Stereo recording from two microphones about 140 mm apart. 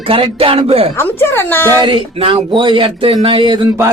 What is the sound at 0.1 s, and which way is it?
Speech, 40° right (ahead or behind).